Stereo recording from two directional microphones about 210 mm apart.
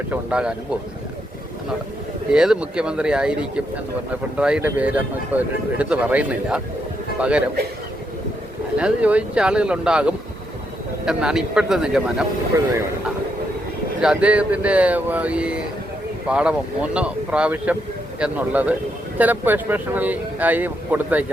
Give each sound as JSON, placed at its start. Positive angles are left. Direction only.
{"t": 0.1, "sound": "speech", "side_deg": -5}
{"t": 2.3, "sound": "speech", "side_deg": -5}
{"t": 8.8, "sound": "speech", "side_deg": -5}
{"t": 14.0, "sound": "speech", "side_deg": -5}